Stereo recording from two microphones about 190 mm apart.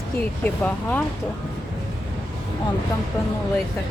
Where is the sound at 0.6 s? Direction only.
10° left (ahead or behind).